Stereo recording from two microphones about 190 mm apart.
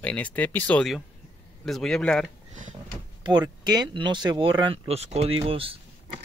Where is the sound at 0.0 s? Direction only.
10° left (ahead or behind).